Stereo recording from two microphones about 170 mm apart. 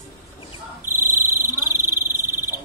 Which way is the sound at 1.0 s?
15° right (ahead or behind).